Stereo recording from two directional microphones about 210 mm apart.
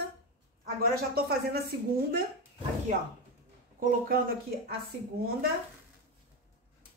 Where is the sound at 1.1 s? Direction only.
45° right (ahead or behind).